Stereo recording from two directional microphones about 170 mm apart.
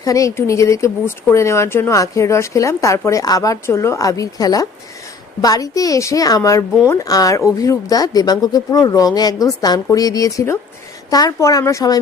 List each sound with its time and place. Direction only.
0.0 s a woman's voice: 20° left (ahead or behind)